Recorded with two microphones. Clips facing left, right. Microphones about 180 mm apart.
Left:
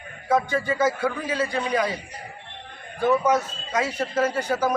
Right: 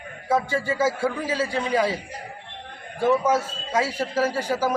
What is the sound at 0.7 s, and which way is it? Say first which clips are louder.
A man's voice: even; 25° right (ahead or behind).